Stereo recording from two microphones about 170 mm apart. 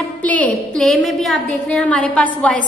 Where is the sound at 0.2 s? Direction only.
10° left (ahead or behind).